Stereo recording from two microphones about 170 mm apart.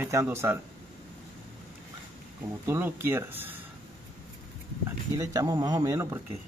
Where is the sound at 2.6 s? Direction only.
15° right (ahead or behind).